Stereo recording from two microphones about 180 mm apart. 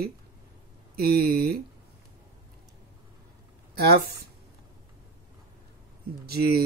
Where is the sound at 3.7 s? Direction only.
60° right (ahead or behind).